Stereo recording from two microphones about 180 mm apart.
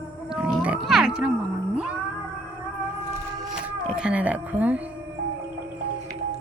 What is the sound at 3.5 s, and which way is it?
Music, 5° right (ahead or behind).